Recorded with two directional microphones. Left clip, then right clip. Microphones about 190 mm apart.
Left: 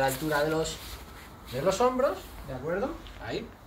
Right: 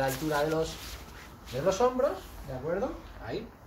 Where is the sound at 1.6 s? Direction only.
5° right (ahead or behind).